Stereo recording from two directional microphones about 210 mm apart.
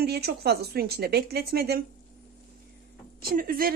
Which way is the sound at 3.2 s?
45° right (ahead or behind).